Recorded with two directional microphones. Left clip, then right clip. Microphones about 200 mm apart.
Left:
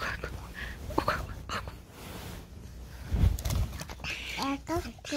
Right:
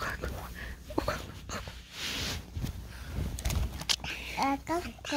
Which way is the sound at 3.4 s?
25° left (ahead or behind).